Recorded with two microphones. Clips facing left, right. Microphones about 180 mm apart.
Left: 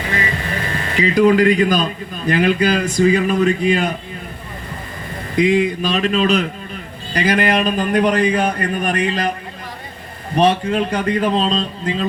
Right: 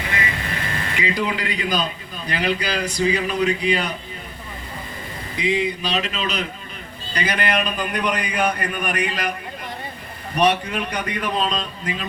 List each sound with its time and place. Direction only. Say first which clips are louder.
0.9 s a man's voice: left 12 dB; 45° left (ahead or behind)
5.4 s a man's voice: left 7 dB; 45° left (ahead or behind)
8.1 s a man's voice: left 6 dB; 30° left (ahead or behind)
10.3 s a man's voice: left 4 dB; 25° left (ahead or behind)